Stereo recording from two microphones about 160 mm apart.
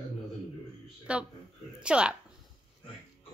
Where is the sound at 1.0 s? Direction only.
5° right (ahead or behind).